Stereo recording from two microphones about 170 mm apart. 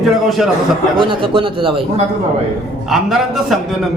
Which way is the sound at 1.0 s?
30° right (ahead or behind).